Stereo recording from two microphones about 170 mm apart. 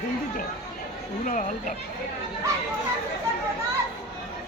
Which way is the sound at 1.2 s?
50° left (ahead or behind).